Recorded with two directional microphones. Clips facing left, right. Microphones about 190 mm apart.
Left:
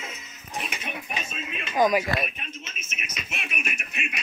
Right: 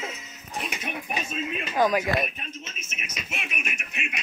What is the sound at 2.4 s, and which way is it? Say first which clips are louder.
Speech: right 1 dB; 35° right (ahead or behind).